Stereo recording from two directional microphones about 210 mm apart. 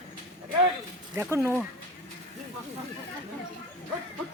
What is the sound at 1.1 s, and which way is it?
Speech, 10° right (ahead or behind).